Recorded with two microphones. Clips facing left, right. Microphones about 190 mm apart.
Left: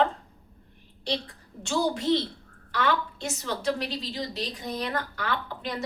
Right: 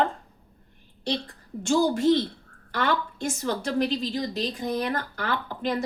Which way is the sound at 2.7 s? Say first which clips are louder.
Right 1 dB; 50° right (ahead or behind).